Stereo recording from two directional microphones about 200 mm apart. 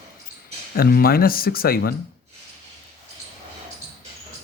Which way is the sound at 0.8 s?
50° left (ahead or behind).